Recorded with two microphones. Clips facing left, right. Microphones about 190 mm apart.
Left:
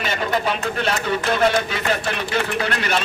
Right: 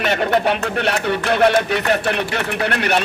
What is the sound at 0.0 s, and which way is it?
A man's voice, 65° right (ahead or behind).